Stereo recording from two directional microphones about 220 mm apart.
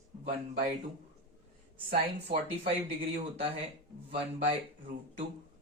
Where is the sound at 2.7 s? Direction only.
25° right (ahead or behind).